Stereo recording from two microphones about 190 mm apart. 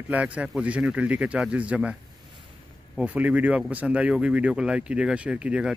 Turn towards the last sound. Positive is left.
turn(degrees=-5)  # may be behind; listen again after turning